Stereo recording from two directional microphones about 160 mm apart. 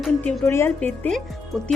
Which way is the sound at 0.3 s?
15° left (ahead or behind).